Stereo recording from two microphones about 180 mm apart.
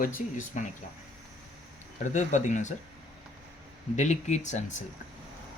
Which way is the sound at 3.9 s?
40° left (ahead or behind).